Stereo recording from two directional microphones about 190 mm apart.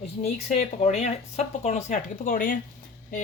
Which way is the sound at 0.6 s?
35° left (ahead or behind).